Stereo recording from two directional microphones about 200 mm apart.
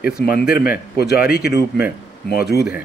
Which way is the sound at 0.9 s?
50° left (ahead or behind).